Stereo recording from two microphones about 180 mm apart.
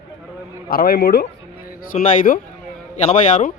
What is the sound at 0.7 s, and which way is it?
Speech, 55° left (ahead or behind).